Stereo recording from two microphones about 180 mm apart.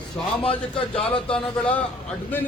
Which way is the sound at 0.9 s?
30° left (ahead or behind).